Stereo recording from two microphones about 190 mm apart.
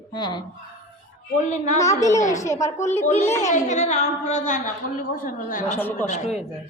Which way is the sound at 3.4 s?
40° left (ahead or behind).